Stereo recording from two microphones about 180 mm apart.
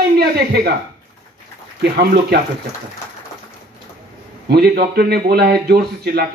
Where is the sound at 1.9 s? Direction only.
60° right (ahead or behind).